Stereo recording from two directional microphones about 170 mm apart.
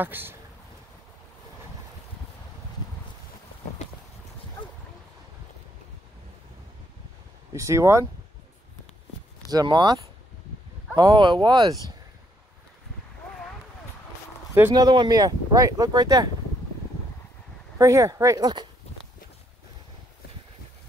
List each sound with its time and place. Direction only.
0.0 s speech: 10° right (ahead or behind)
7.5 s speech: 15° right (ahead or behind)
9.5 s speech: 25° right (ahead or behind)
11.0 s speech: 25° right (ahead or behind)
14.7 s speech: 25° right (ahead or behind)
17.7 s speech: 20° right (ahead or behind)